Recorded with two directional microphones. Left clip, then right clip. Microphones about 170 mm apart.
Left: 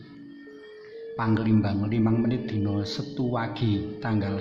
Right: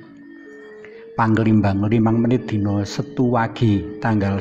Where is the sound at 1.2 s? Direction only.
35° right (ahead or behind).